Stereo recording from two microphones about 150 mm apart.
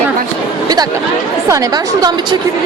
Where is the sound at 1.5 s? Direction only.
20° right (ahead or behind).